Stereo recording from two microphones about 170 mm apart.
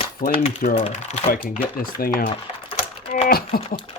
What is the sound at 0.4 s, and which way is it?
Speech, 40° left (ahead or behind).